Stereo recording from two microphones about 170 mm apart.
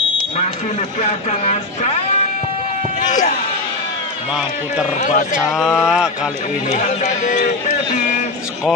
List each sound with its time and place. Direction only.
1.0 s speech: 45° left (ahead or behind)
3.1 s speech: 45° left (ahead or behind)
5.0 s speech: 45° left (ahead or behind)
5.5 s speech: 5° right (ahead or behind)
6.7 s speech: 45° left (ahead or behind)